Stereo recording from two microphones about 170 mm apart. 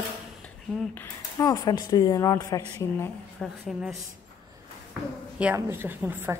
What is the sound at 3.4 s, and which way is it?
Speech, centre (ahead or behind).